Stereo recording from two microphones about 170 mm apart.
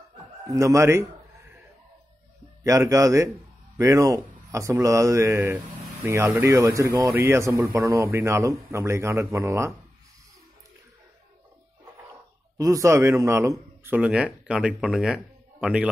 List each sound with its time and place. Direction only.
0.5 s a sound: 20° right (ahead or behind)
2.6 s a man's voice: 20° right (ahead or behind)
12.5 s a man's voice: 20° right (ahead or behind)